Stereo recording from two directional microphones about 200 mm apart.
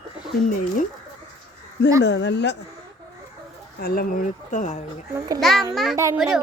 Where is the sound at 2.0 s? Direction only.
60° left (ahead or behind).